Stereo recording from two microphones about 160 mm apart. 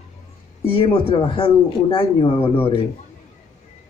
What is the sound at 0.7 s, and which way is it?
Speech, 30° left (ahead or behind).